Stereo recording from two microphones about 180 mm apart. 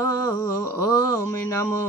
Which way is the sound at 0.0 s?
15° left (ahead or behind).